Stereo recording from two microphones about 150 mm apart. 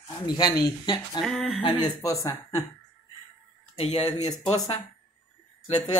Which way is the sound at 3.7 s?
40° left (ahead or behind).